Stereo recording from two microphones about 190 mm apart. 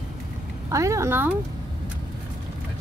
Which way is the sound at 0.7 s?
15° right (ahead or behind).